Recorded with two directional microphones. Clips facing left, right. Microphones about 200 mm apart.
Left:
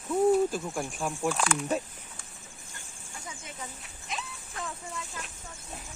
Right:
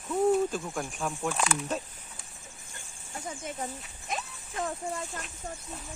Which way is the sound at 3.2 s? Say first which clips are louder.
Right 7 dB; 45° right (ahead or behind).